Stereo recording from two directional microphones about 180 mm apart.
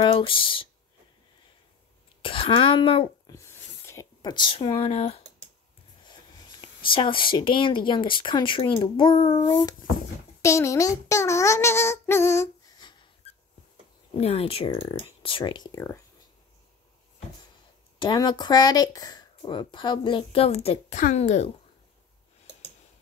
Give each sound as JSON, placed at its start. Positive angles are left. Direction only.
{"t": 0.0, "sound": "a sound", "side_deg": 30}
{"t": 2.2, "sound": "speech", "side_deg": 30}
{"t": 3.3, "sound": "a sound", "side_deg": 15}
{"t": 6.0, "sound": "a child's voice", "side_deg": 25}
{"t": 14.1, "sound": "speech", "side_deg": 35}
{"t": 17.9, "sound": "speech", "side_deg": 25}